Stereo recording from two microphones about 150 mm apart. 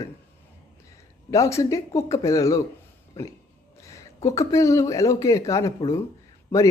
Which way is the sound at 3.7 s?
20° left (ahead or behind).